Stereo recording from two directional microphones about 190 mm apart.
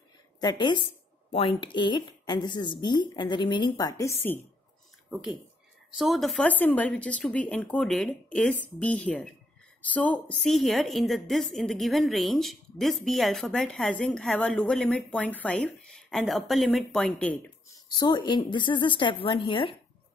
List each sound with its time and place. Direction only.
0.4 s speech: 25° left (ahead or behind)
4.2 s speech: 10° left (ahead or behind)
5.9 s a woman's voice: centre (ahead or behind)
17.8 s speech: 20° left (ahead or behind)